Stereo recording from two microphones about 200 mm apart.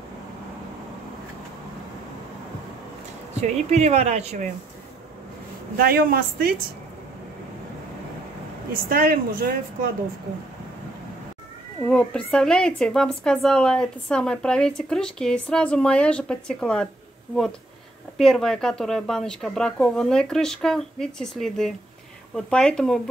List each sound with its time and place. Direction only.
3.3 s a woman's voice: 35° right (ahead or behind)
5.8 s a woman's voice: 50° right (ahead or behind)
8.7 s a woman's voice: 45° right (ahead or behind)
11.9 s a woman's voice: 5° left (ahead or behind)
18.1 s a woman's voice: centre (ahead or behind)